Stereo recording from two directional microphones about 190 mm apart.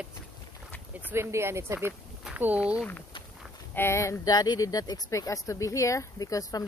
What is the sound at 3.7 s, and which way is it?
Speech, 15° left (ahead or behind).